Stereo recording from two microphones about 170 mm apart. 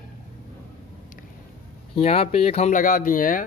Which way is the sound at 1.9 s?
35° left (ahead or behind).